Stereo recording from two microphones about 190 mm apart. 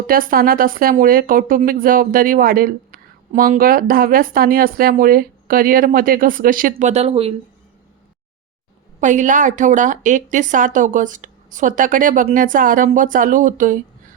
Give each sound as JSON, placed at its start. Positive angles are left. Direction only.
{"t": 0.1, "sound": "speech", "side_deg": -50}
{"t": 9.0, "sound": "speech", "side_deg": -40}